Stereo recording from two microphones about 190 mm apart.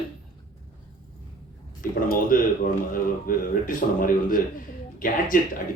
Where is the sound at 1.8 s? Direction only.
45° left (ahead or behind).